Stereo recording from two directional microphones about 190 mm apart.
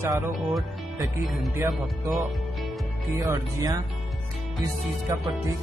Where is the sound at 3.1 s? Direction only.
15° right (ahead or behind).